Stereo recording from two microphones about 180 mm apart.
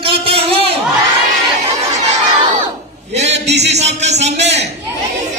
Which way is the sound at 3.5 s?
75° right (ahead or behind).